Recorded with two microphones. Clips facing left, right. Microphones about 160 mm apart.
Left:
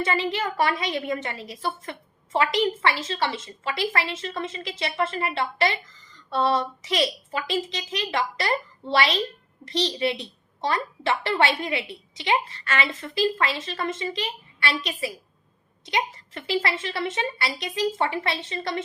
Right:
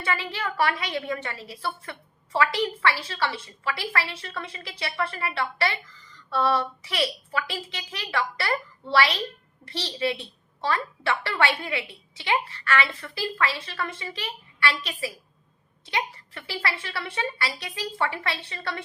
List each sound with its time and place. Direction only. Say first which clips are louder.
0.0 s a woman's voice: left 4 dB; 20° left (ahead or behind)